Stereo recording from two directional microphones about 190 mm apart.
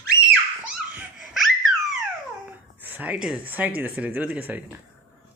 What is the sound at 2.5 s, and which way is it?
Speech, 10° right (ahead or behind).